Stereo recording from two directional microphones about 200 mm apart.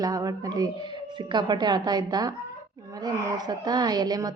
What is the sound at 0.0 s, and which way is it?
A woman's voice, 20° right (ahead or behind).